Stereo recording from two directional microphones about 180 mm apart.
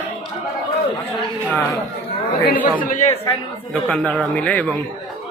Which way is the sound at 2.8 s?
50° left (ahead or behind).